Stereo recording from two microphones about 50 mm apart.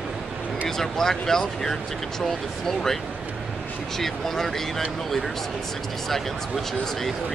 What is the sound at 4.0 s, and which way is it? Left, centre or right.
Speech, centre.